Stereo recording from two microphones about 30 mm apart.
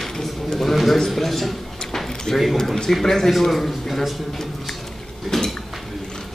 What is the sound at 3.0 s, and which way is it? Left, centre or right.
Speech, centre.